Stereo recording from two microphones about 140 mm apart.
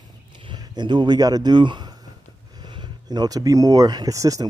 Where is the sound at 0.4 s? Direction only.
35° right (ahead or behind).